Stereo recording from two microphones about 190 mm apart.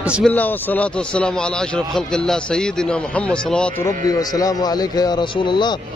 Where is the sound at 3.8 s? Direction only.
20° left (ahead or behind).